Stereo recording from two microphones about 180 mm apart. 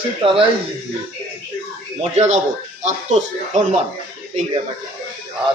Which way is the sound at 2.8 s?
40° right (ahead or behind).